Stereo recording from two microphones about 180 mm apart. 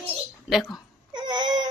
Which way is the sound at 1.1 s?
25° right (ahead or behind).